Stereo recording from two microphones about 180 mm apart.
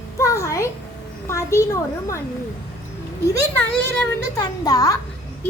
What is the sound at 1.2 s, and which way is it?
Speech, 15° left (ahead or behind).